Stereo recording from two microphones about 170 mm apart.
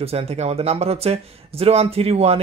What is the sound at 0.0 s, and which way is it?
Speech, 35° right (ahead or behind).